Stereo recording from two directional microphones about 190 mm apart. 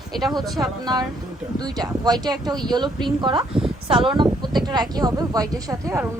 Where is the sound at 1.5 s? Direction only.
20° right (ahead or behind).